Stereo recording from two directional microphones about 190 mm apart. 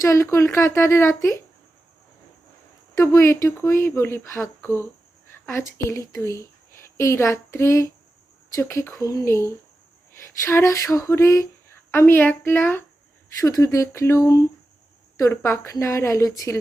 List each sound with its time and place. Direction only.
0.0 s speech: 15° left (ahead or behind)
2.9 s a woman's voice: 15° left (ahead or behind)
10.2 s a sound: 15° left (ahead or behind)
13.4 s speech: 15° left (ahead or behind)